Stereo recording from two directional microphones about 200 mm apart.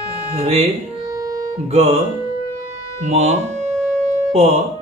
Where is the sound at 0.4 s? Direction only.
30° right (ahead or behind).